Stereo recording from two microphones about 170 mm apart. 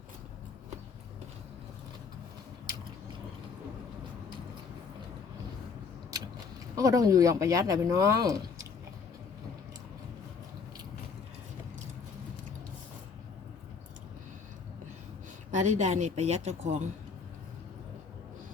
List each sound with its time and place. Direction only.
6.1 s a sound: 20° right (ahead or behind)
6.7 s speech: 20° right (ahead or behind)
15.5 s a woman's voice: 45° right (ahead or behind)